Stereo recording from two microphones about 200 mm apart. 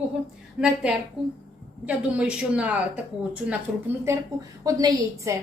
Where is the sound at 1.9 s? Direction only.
5° right (ahead or behind).